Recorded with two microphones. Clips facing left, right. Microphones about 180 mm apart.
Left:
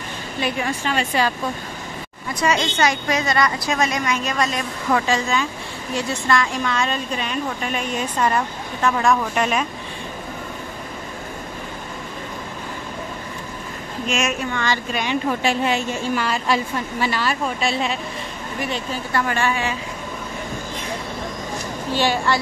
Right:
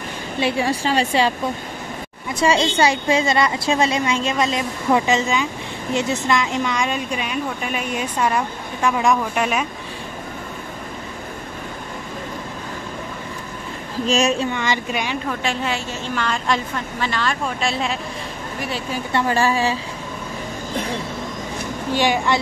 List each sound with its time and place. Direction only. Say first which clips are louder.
0.4 s a woman's voice: right 4 dB; 30° right (ahead or behind)
2.4 s a woman's voice: right 3 dB; 30° right (ahead or behind); by 9.7 s 5° right (ahead or behind)
14.0 s a woman's voice: right 5 dB; 35° right (ahead or behind)
14.5 s speech: right 1 dB; 15° right (ahead or behind)
15.4 s a woman's voice: left 3 dB; 15° left (ahead or behind); by 18.9 s 5° right (ahead or behind)
19.1 s a woman's voice: right 3 dB; 35° right (ahead or behind)
21.9 s speech: right 1 dB; 15° right (ahead or behind)